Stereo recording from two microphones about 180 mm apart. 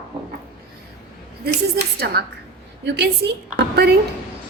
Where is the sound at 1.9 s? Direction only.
60° right (ahead or behind).